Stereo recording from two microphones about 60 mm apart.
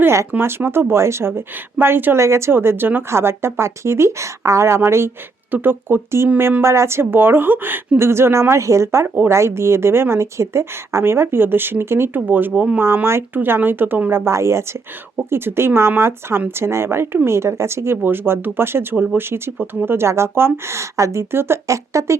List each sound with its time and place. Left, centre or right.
0.4 s speech: right
2.1 s speech: right
2.5 s speech: right
5.5 s speech: right
7.9 s speech: right
14.3 s speech: right
15.3 s speech: right
21.7 s speech: right